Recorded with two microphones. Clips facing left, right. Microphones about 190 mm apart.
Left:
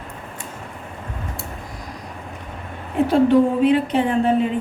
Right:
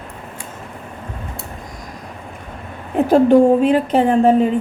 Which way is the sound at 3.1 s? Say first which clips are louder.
Right 5 dB; 45° right (ahead or behind).